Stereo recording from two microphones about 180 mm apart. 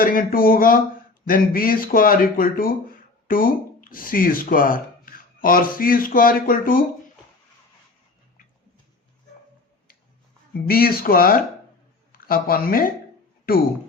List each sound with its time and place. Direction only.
0.0 s speech: 50° left (ahead or behind)
10.5 s speech: 55° left (ahead or behind)